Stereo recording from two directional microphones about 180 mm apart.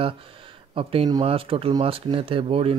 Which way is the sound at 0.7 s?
30° right (ahead or behind).